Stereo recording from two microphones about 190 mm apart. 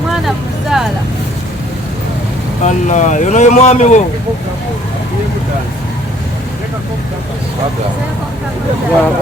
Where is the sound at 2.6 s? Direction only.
40° left (ahead or behind).